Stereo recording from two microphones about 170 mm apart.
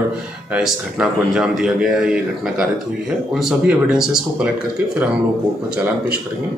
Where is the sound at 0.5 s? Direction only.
5° right (ahead or behind).